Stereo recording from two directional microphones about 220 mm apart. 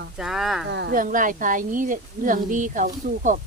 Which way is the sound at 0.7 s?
50° right (ahead or behind).